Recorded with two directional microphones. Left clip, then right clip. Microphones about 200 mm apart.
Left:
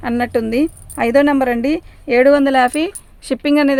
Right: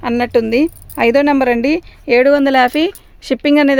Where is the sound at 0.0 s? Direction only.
40° right (ahead or behind).